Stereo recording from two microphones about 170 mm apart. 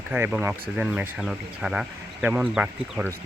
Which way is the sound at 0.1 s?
10° right (ahead or behind).